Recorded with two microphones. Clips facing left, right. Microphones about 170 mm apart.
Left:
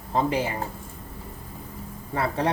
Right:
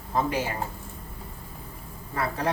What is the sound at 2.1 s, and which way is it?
Speech, 30° left (ahead or behind).